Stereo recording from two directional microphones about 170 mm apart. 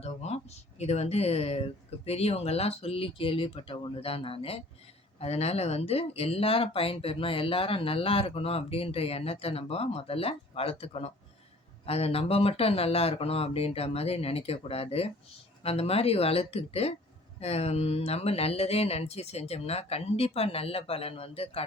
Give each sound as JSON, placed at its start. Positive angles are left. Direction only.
{"t": 0.0, "sound": "speech", "side_deg": 40}